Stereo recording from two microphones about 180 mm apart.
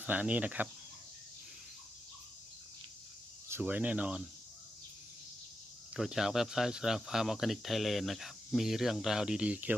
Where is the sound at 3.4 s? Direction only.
10° right (ahead or behind).